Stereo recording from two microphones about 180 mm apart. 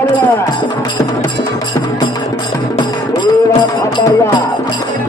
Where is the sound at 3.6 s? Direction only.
25° left (ahead or behind).